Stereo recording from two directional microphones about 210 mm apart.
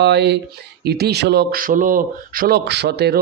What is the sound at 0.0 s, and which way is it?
Mantra, 55° right (ahead or behind).